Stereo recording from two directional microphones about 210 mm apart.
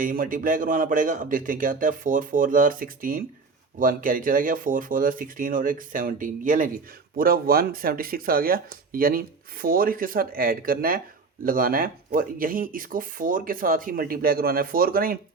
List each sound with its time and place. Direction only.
0.0 s speech: 40° right (ahead or behind)